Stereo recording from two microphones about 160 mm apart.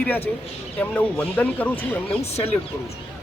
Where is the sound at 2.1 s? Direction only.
40° left (ahead or behind).